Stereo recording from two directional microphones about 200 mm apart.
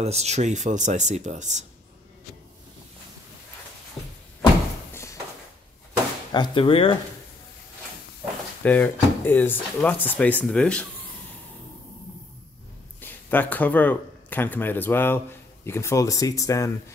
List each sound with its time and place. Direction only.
0.0 s speech: 30° right (ahead or behind)
6.3 s speech: 25° left (ahead or behind)
8.6 s speech: 10° left (ahead or behind)
13.0 s speech: 10° left (ahead or behind)